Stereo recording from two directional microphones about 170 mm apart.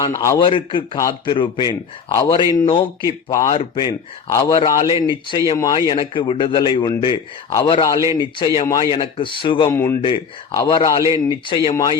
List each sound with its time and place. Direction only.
0.0 s a man's voice: 20° left (ahead or behind)
0.4 s a man's voice: 30° left (ahead or behind)
9.6 s a man's voice: 15° left (ahead or behind)
11.7 s a man's voice: 20° left (ahead or behind)